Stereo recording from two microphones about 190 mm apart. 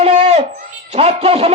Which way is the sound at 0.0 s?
35° right (ahead or behind).